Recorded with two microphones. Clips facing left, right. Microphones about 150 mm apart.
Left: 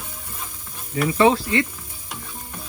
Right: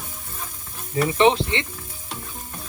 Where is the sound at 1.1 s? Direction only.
25° right (ahead or behind).